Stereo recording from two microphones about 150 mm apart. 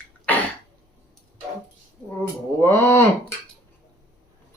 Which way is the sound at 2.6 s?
15° left (ahead or behind).